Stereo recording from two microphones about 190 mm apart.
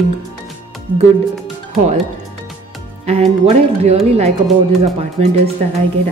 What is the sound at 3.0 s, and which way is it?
A woman's voice, 35° right (ahead or behind).